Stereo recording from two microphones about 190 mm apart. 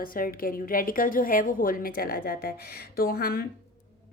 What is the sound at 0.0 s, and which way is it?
Speech, 50° left (ahead or behind).